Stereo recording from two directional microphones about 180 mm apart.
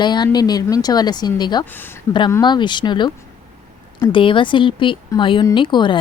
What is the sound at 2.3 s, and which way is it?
Speech, 25° left (ahead or behind).